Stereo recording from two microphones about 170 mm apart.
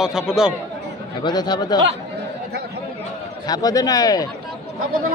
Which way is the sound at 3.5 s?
20° left (ahead or behind).